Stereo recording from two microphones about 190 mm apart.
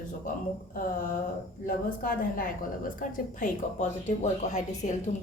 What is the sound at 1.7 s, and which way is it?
A woman's voice, 50° left (ahead or behind).